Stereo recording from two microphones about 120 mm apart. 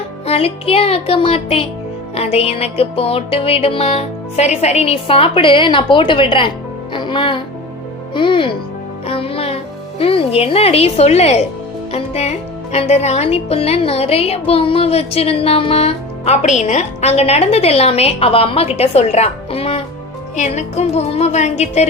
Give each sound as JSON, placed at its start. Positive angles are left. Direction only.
{"t": 0.3, "sound": "speech", "side_deg": 55}
{"t": 2.1, "sound": "music", "side_deg": 55}
{"t": 6.9, "sound": "speech", "side_deg": 40}
{"t": 8.1, "sound": "music", "side_deg": 45}
{"t": 10.0, "sound": "speech", "side_deg": 50}
{"t": 20.3, "sound": "a woman's voice", "side_deg": 75}